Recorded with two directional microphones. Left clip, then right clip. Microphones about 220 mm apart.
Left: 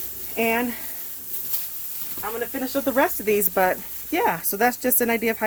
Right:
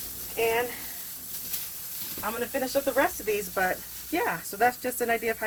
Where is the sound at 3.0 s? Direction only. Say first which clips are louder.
Left 5 dB; 50° left (ahead or behind).